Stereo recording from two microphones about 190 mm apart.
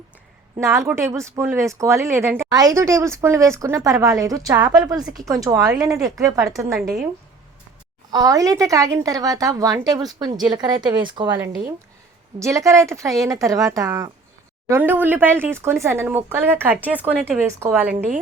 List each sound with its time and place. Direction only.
0.5 s speech: 15° right (ahead or behind)
6.7 s a woman's voice: centre (ahead or behind)
8.1 s a woman's voice: 20° right (ahead or behind)